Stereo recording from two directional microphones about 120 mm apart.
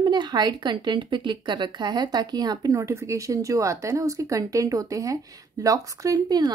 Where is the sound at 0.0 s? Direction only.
35° right (ahead or behind).